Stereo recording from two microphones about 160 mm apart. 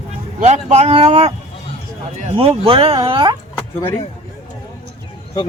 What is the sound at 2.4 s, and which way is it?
Speech, 35° right (ahead or behind).